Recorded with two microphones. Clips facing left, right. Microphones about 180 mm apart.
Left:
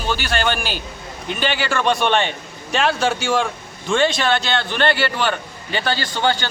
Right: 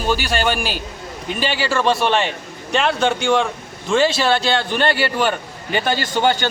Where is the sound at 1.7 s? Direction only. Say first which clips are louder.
Right 1 dB; 5° right (ahead or behind).